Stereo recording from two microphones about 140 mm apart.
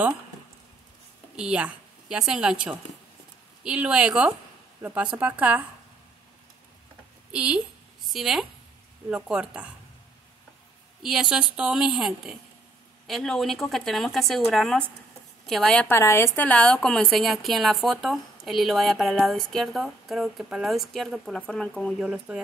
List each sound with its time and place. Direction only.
1.3 s a woman's voice: 5° right (ahead or behind)
3.6 s a woman's voice: 10° right (ahead or behind)
7.3 s a woman's voice: 5° right (ahead or behind)
11.0 s a woman's voice: 5° right (ahead or behind)
16.0 s a woman's voice: 20° left (ahead or behind)
22.0 s a woman's voice: 5° right (ahead or behind)